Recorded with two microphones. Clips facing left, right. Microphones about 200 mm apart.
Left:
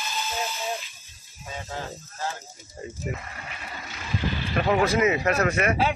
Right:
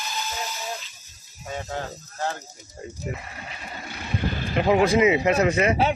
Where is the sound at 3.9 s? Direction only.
50° right (ahead or behind).